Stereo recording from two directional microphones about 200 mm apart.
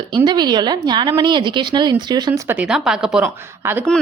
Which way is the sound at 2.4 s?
5° right (ahead or behind).